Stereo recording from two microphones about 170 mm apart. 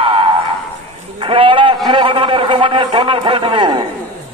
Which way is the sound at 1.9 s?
30° right (ahead or behind).